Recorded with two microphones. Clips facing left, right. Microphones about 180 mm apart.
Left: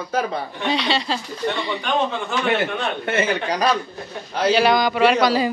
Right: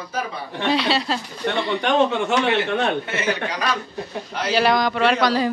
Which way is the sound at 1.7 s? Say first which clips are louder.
Right 7 dB; 70° right (ahead or behind).